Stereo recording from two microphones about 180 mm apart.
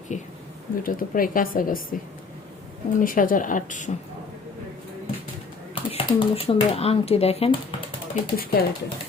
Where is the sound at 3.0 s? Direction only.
50° left (ahead or behind).